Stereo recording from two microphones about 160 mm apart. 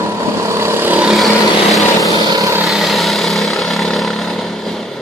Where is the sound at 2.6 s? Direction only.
Centre (ahead or behind).